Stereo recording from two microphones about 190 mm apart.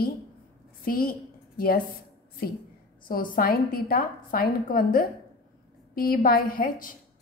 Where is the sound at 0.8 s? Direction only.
50° left (ahead or behind).